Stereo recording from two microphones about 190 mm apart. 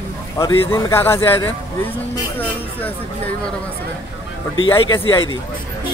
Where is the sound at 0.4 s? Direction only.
15° left (ahead or behind).